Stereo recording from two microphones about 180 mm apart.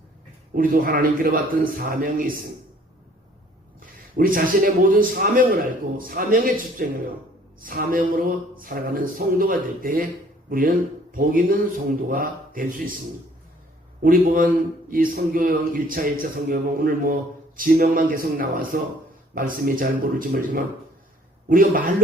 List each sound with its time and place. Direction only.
0.5 s speech: 50° right (ahead or behind)
3.8 s a man's voice: 50° right (ahead or behind)
14.0 s speech: 50° right (ahead or behind)